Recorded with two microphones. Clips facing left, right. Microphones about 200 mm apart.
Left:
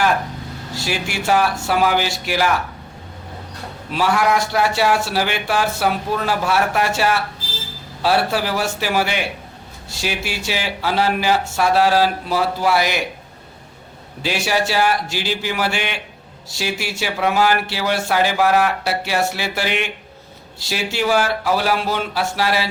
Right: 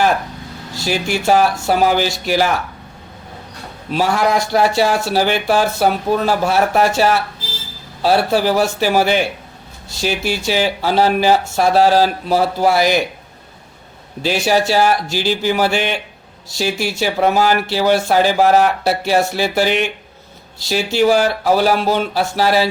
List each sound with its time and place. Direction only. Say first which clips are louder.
0.9 s speech: right 5 dB; 40° right (ahead or behind)
3.9 s speech: right 2 dB; 40° right (ahead or behind)
14.2 s speech: right 5 dB; 40° right (ahead or behind)
17.0 s speech: right 3 dB; 40° right (ahead or behind)